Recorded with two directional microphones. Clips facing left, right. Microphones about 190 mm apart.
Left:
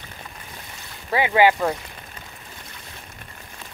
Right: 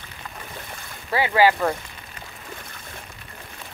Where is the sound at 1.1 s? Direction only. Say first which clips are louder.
Left 1 dB; 20° left (ahead or behind).